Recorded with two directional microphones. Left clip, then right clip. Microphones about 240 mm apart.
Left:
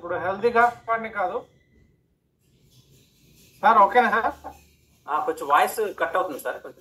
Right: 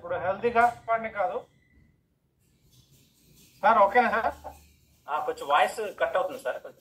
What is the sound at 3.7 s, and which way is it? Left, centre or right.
A man's voice, left.